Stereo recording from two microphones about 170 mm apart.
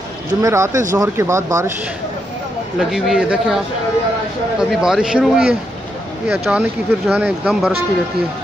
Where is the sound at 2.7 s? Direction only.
Centre (ahead or behind).